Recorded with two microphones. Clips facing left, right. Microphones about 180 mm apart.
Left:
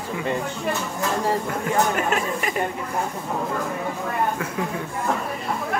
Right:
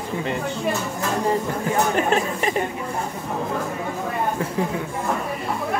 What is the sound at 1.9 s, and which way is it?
Speech, 30° right (ahead or behind).